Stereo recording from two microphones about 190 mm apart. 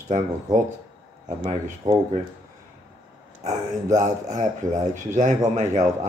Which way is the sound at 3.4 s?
40° right (ahead or behind).